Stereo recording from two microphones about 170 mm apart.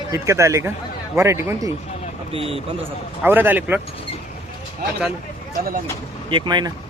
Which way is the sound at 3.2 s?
10° right (ahead or behind).